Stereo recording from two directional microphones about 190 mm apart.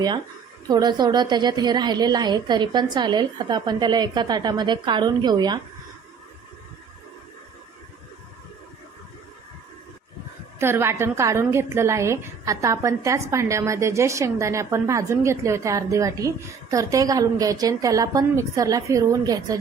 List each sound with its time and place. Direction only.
0.7 s a woman's voice: 20° right (ahead or behind)
10.6 s a woman's voice: 15° right (ahead or behind)